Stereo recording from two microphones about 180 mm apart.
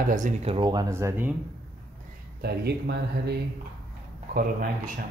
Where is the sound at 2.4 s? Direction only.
65° right (ahead or behind).